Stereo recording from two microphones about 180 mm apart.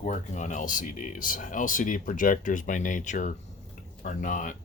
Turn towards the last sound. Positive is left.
turn(degrees=50)  # may be behind; listen again after turning